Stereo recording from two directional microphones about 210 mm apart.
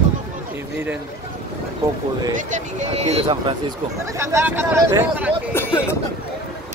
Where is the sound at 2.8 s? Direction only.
30° right (ahead or behind).